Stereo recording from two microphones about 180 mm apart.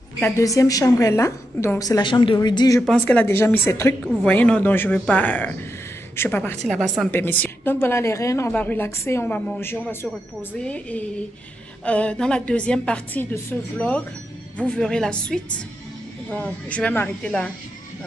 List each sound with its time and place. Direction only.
0.2 s a woman's voice: 20° left (ahead or behind)
2.8 s a woman's voice: 5° left (ahead or behind)